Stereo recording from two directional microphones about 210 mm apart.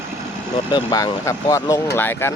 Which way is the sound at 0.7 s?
20° left (ahead or behind).